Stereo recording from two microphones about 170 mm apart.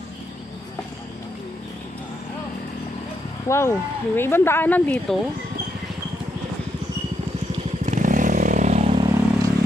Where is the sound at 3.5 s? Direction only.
15° left (ahead or behind).